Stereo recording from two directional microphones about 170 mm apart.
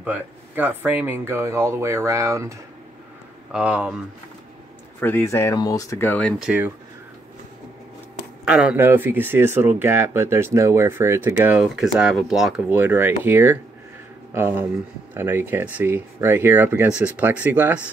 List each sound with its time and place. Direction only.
0.0 s speech: 10° right (ahead or behind)
3.5 s speech: 5° right (ahead or behind)
5.0 s speech: 15° left (ahead or behind)
6.4 s speech: 10° right (ahead or behind)
8.5 s speech: 5° right (ahead or behind)